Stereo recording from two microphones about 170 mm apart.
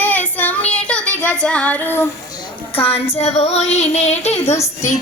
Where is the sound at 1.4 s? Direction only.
5° left (ahead or behind).